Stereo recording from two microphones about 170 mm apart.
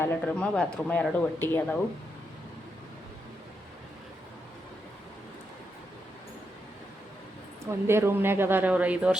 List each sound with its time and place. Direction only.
0.0 s speech: 10° left (ahead or behind)
7.6 s speech: 15° right (ahead or behind)